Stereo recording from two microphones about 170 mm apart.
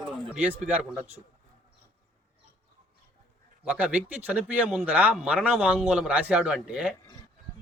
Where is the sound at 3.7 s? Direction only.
10° right (ahead or behind).